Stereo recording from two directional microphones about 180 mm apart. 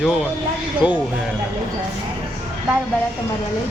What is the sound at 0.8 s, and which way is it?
Speech, 25° left (ahead or behind).